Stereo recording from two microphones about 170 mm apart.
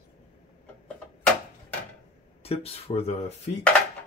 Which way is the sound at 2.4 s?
35° left (ahead or behind).